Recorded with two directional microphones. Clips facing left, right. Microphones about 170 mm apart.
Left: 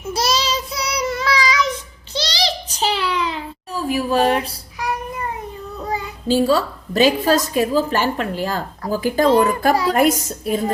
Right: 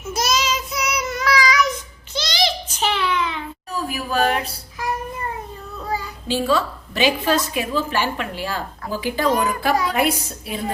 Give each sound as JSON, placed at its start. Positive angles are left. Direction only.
{"t": 0.1, "sound": "child singing", "side_deg": 30}
{"t": 2.1, "sound": "a sound", "side_deg": 35}
{"t": 5.8, "sound": "child singing", "side_deg": 20}
{"t": 6.2, "sound": "a woman's voice", "side_deg": 40}
{"t": 9.2, "sound": "a child's voice", "side_deg": 30}